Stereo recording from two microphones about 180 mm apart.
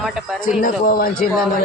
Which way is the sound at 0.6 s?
50° left (ahead or behind).